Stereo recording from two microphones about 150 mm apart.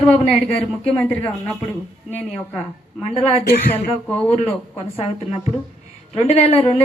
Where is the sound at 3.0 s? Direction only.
50° left (ahead or behind).